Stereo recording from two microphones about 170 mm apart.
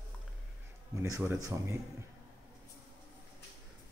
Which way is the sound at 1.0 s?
15° right (ahead or behind).